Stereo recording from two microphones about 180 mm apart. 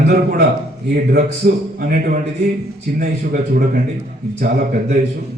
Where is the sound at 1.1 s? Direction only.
55° right (ahead or behind).